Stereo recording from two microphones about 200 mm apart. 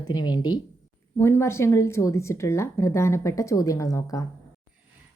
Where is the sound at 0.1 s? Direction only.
20° left (ahead or behind).